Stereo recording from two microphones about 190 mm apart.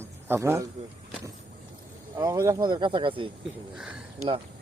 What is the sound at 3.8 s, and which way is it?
Speech, 5° right (ahead or behind).